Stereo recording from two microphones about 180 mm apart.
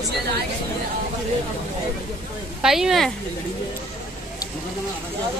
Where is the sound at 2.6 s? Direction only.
Centre (ahead or behind).